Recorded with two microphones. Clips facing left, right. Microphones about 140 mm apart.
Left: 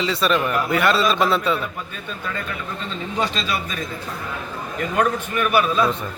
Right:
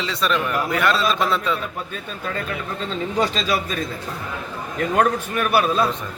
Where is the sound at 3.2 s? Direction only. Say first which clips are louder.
Right 2 dB; 40° right (ahead or behind).